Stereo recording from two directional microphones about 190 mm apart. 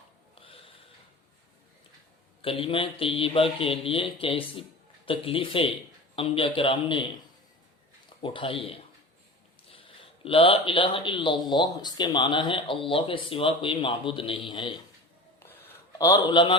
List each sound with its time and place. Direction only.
0.3 s snort: 30° left (ahead or behind)
2.4 s speech: 30° left (ahead or behind)
8.2 s speech: 25° left (ahead or behind)
15.4 s a sound: 10° left (ahead or behind)